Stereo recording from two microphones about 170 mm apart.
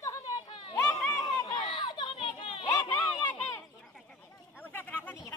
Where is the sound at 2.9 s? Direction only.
10° left (ahead or behind).